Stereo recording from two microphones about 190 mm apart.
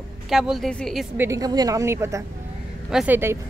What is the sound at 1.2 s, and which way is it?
A woman's voice, 15° right (ahead or behind).